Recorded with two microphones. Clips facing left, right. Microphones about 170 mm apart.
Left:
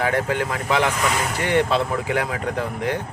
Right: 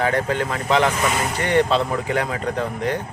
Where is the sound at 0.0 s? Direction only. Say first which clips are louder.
Right 1 dB; 10° left (ahead or behind).